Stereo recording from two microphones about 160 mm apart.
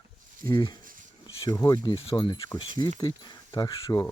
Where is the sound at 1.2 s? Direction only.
30° left (ahead or behind).